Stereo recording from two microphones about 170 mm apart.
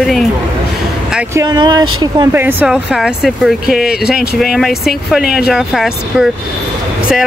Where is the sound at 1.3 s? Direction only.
20° right (ahead or behind).